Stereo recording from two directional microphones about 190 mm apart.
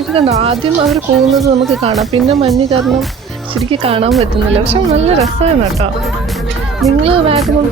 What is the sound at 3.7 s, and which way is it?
Speech, 30° right (ahead or behind).